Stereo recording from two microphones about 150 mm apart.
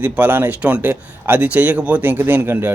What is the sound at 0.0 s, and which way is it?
Speech, 10° right (ahead or behind).